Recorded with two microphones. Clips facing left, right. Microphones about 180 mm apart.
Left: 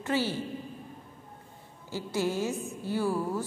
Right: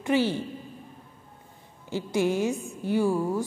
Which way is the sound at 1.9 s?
20° right (ahead or behind).